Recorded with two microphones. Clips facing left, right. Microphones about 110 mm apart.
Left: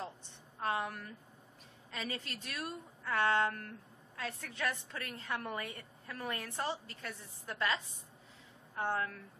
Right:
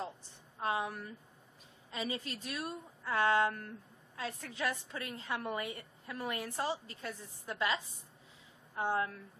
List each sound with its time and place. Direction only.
0.6 s a woman's voice: 15° right (ahead or behind)
4.2 s a woman's voice: 25° right (ahead or behind)
4.6 s a woman's voice: 15° right (ahead or behind)
8.7 s a woman's voice: 15° right (ahead or behind)